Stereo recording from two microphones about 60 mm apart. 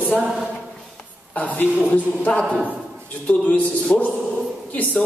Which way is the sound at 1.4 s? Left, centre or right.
Left.